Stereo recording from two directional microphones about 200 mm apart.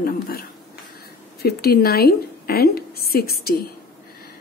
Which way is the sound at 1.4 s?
50° left (ahead or behind).